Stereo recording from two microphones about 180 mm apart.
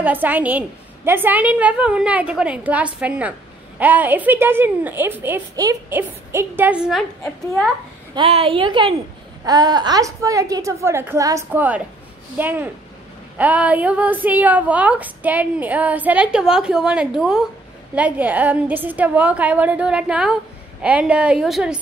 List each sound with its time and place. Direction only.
0.0 s a woman's voice: 10° right (ahead or behind)
8.1 s a woman's voice: 30° right (ahead or behind); by 21.7 s centre (ahead or behind)